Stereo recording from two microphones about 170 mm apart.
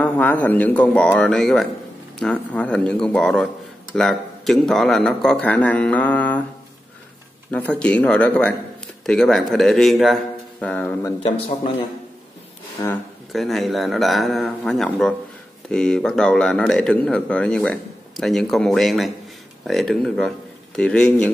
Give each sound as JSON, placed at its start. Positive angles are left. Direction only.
{"t": 0.0, "sound": "speech", "side_deg": 10}
{"t": 7.5, "sound": "a man's voice", "side_deg": 5}
{"t": 11.2, "sound": "speech", "side_deg": 35}
{"t": 12.8, "sound": "speech", "side_deg": 20}
{"t": 13.3, "sound": "speech", "side_deg": 0}